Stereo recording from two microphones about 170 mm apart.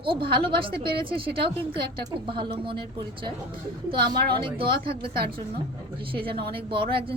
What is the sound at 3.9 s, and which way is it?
Speech, 30° right (ahead or behind).